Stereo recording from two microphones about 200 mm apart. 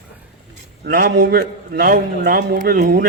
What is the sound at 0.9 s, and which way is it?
A man's voice, 50° right (ahead or behind).